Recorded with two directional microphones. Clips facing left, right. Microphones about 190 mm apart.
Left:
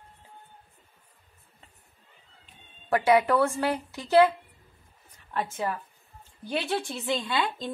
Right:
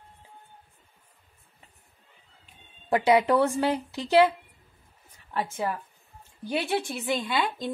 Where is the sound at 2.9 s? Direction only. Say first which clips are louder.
Right 1 dB; 20° right (ahead or behind).